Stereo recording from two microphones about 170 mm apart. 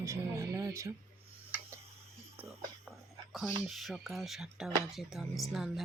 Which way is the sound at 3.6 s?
Centre (ahead or behind).